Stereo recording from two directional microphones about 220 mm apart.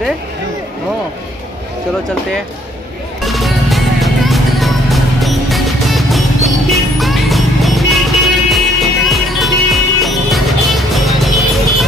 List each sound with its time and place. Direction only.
3.3 s music: centre (ahead or behind)